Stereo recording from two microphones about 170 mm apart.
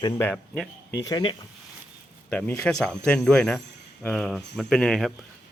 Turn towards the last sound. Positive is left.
turn(degrees=0)  # may be behind; listen again after turning